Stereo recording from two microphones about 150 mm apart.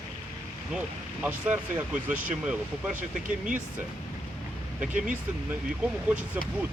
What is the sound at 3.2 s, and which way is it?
Speech, 60° right (ahead or behind).